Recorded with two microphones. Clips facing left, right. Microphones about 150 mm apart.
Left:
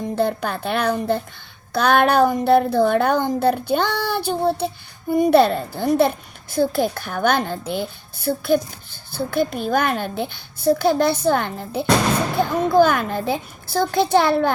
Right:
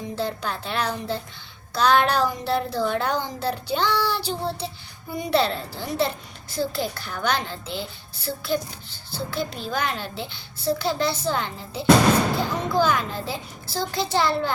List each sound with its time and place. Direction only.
0.2 s a child's voice: 55° left (ahead or behind)